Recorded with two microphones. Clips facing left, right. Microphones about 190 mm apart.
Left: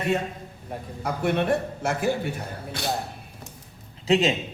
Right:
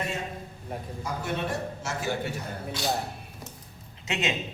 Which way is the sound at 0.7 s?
Centre (ahead or behind).